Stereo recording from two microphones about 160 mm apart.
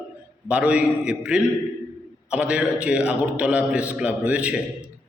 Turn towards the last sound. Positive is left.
turn(degrees=-10)  # may be behind; listen again after turning